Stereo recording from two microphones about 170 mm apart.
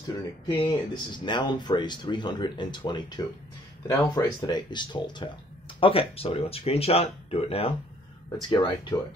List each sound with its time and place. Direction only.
0.5 s speech: 25° left (ahead or behind)
8.4 s speech: 25° left (ahead or behind)